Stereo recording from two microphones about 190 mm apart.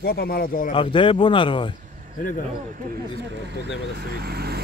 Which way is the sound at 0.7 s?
25° left (ahead or behind).